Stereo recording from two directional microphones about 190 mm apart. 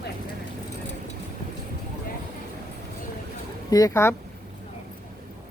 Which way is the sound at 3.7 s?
15° left (ahead or behind).